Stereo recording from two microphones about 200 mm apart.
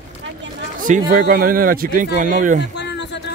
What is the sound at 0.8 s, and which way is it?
Speech, 45° right (ahead or behind).